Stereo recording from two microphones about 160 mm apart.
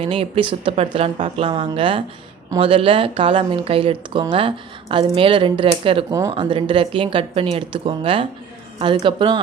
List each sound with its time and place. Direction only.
0.0 s speech: 35° right (ahead or behind)
6.1 s speech: 20° right (ahead or behind)
6.3 s speech: 35° right (ahead or behind)